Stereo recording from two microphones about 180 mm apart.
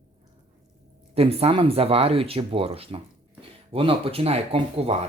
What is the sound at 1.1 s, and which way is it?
Speech, 35° right (ahead or behind).